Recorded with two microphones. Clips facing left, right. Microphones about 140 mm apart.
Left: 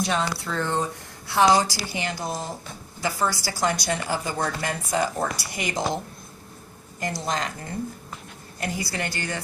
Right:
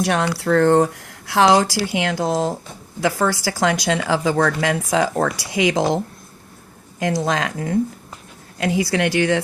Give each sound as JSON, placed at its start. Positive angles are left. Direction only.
{"t": 0.0, "sound": "speech", "side_deg": -65}
{"t": 7.0, "sound": "speech", "side_deg": -85}
{"t": 8.5, "sound": "speech", "side_deg": -90}